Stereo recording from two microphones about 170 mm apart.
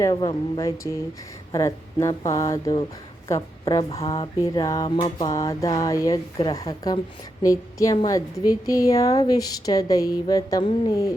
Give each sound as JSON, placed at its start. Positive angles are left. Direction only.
{"t": 0.0, "sound": "a woman's voice", "side_deg": 25}